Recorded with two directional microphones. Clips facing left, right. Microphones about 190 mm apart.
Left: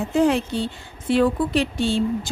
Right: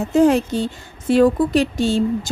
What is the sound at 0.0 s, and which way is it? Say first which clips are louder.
A woman's voice: right 4 dB; 45° right (ahead or behind).